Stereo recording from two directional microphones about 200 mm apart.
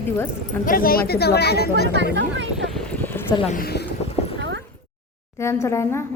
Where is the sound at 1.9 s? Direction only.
65° right (ahead or behind).